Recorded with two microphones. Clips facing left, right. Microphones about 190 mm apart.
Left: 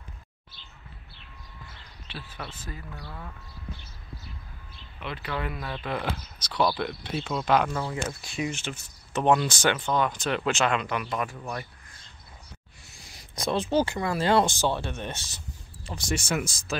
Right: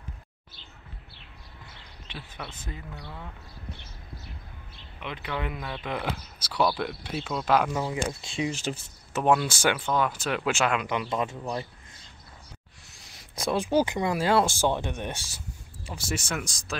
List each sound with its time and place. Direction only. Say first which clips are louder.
2.1 s speech: left 1 dB; 15° right (ahead or behind)
5.0 s speech: even; 15° right (ahead or behind)
7.7 s speech: right 2 dB; 20° right (ahead or behind); by 8.8 s 35° right (ahead or behind)
9.1 s speech: left 1 dB; 5° right (ahead or behind)
10.9 s speech: right 2 dB; 20° right (ahead or behind)
12.9 s speech: even; centre (ahead or behind); by 14.2 s 15° right (ahead or behind)
14.2 s speech: left 1 dB; 5° right (ahead or behind)